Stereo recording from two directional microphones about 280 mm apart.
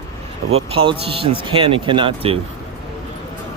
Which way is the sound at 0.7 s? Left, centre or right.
Centre.